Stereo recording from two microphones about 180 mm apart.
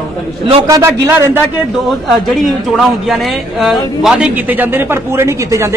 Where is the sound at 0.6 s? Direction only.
15° right (ahead or behind).